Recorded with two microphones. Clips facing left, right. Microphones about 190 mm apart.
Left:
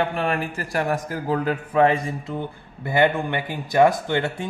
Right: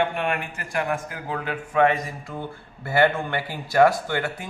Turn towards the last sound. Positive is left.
turn(degrees=25)  # may be behind; listen again after turning